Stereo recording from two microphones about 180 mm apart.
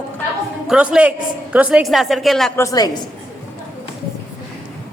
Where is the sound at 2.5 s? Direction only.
20° left (ahead or behind).